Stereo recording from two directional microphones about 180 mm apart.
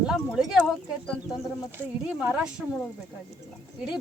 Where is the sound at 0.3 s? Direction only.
5° right (ahead or behind).